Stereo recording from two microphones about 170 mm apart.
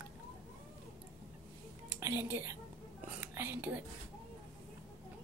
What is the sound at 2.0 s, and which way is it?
Speech, 15° right (ahead or behind).